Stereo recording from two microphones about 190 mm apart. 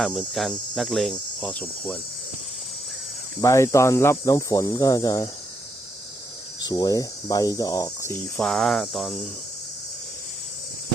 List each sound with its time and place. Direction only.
0.0 s cricket: centre (ahead or behind)
3.4 s speech: 15° left (ahead or behind)
6.6 s speech: 20° left (ahead or behind)
8.4 s cricket: centre (ahead or behind)